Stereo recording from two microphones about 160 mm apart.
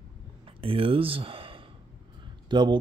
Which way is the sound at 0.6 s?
35° right (ahead or behind).